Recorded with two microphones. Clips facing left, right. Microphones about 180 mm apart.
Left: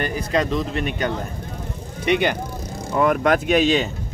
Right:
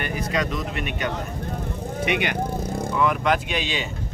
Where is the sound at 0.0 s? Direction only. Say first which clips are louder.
Left 4 dB; 35° left (ahead or behind).